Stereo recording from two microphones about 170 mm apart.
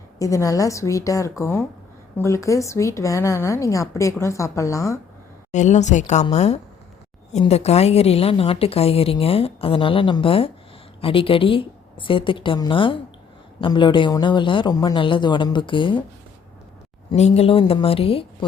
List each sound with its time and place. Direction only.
0.2 s a man's voice: 20° left (ahead or behind)
5.5 s a woman's voice: 45° left (ahead or behind); by 16.0 s 30° left (ahead or behind)
17.1 s a woman's voice: 40° left (ahead or behind)